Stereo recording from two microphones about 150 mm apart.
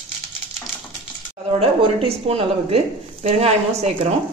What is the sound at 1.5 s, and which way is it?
A woman's voice, 40° right (ahead or behind).